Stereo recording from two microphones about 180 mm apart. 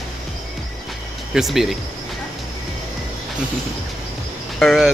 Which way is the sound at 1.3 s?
Centre (ahead or behind).